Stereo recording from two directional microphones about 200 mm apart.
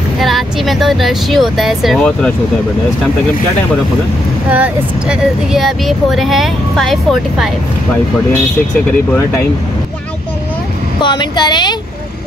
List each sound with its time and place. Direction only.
0.2 s speech: centre (ahead or behind)
4.5 s speech: 5° right (ahead or behind)
11.0 s speech: 25° left (ahead or behind)